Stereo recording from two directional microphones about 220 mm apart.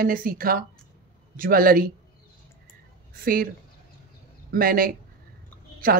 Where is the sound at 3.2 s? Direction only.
40° right (ahead or behind).